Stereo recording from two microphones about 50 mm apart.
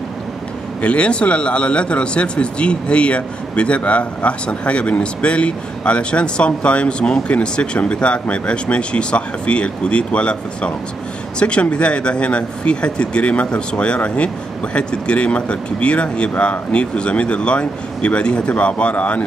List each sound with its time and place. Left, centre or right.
0.7 s speech: left